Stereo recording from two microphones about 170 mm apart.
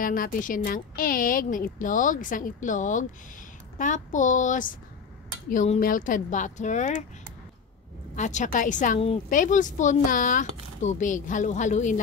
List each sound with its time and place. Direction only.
0.0 s a woman's voice: 55° left (ahead or behind)
8.2 s a woman's voice: 45° left (ahead or behind)